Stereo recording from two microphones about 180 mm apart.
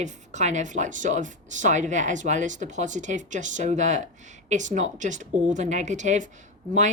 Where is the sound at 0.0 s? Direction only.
40° right (ahead or behind).